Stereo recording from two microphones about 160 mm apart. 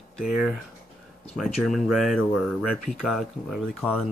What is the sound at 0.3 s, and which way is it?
Speech, 5° right (ahead or behind).